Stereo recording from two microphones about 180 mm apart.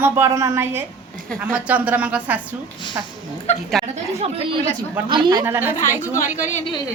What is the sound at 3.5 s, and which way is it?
Speech, 40° left (ahead or behind).